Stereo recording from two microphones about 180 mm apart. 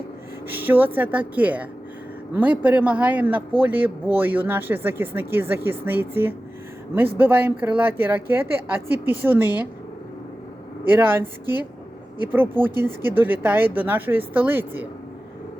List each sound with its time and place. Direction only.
0.4 s speech: 10° right (ahead or behind)
10.8 s speech: 10° right (ahead or behind)